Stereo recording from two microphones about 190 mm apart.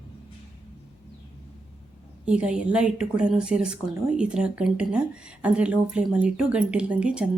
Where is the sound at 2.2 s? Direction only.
5° right (ahead or behind).